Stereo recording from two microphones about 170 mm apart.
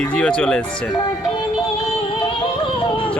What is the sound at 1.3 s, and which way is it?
Music, 30° left (ahead or behind).